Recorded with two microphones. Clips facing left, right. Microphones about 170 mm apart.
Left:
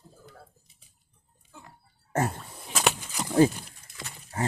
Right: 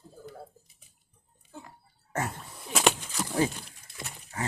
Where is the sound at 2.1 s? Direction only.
35° left (ahead or behind).